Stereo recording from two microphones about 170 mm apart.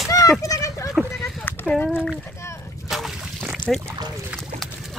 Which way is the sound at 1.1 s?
5° left (ahead or behind).